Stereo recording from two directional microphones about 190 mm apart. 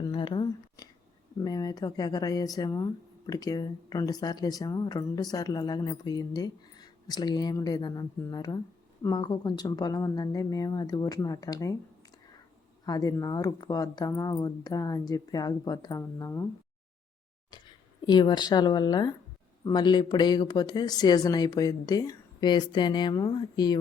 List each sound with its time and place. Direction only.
0.0 s a sound: 25° left (ahead or behind)
1.4 s speech: 20° left (ahead or behind)
12.8 s speech: 20° left (ahead or behind)
18.0 s speech: 20° left (ahead or behind)